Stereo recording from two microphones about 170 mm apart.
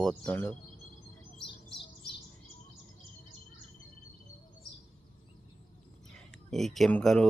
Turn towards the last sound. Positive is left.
turn(degrees=5)  # may be behind; listen again after turning